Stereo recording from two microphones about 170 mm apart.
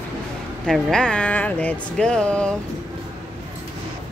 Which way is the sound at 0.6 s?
5° left (ahead or behind).